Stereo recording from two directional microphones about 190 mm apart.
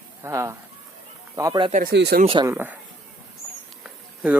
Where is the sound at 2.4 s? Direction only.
10° right (ahead or behind).